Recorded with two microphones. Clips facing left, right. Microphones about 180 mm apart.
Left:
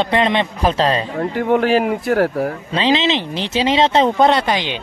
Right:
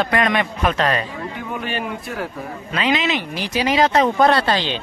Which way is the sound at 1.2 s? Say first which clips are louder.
Left 11 dB; 75° left (ahead or behind).